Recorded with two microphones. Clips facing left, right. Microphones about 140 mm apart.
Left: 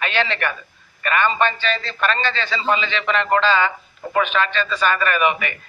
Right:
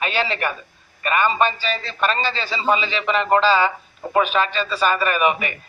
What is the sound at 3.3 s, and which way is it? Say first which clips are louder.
A man's voice: right 2 dB; 35° right (ahead or behind).